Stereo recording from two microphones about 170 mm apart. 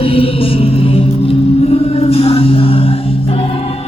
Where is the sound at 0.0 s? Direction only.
35° left (ahead or behind).